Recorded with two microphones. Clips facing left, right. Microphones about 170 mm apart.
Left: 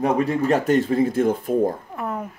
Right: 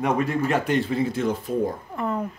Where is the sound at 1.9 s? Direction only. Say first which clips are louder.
Right 2 dB; 5° left (ahead or behind).